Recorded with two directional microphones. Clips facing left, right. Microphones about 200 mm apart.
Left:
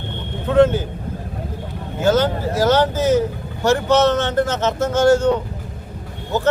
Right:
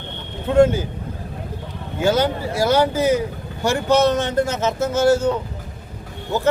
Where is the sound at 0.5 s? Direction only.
10° right (ahead or behind).